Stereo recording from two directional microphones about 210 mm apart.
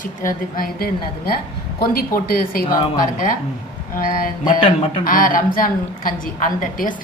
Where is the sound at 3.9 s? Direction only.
40° left (ahead or behind).